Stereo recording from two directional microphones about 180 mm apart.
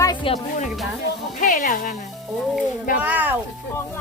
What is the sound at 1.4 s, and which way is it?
Speech, 45° left (ahead or behind).